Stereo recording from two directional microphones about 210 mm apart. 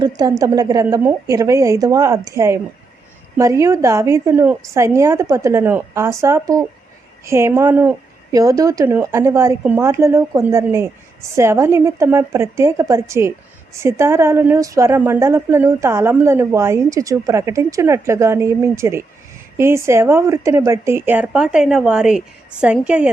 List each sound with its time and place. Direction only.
0.0 s a woman's voice: 20° right (ahead or behind)